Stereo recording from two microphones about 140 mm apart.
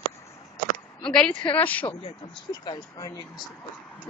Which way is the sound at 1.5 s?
10° left (ahead or behind).